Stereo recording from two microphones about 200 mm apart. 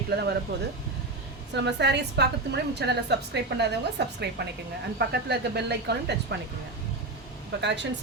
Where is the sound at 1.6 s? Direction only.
60° right (ahead or behind).